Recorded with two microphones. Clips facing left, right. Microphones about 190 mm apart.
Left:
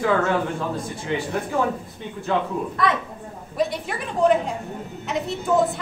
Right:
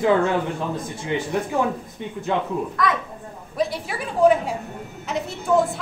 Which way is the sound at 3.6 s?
5° right (ahead or behind).